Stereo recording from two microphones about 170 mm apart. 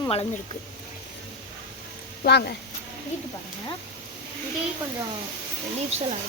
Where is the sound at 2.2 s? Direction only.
70° left (ahead or behind).